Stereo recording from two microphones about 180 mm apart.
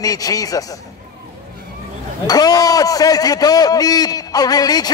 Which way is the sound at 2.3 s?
20° left (ahead or behind).